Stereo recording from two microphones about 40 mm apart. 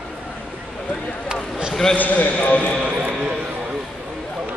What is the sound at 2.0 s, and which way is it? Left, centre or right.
Speech, left.